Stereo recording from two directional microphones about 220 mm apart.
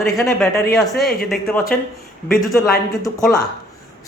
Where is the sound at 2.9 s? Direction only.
15° left (ahead or behind).